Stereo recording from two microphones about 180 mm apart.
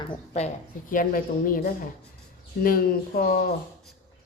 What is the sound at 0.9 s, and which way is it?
Speech, 50° left (ahead or behind).